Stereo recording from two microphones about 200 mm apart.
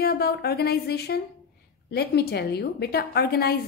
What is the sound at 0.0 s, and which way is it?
A woman's voice, 55° left (ahead or behind).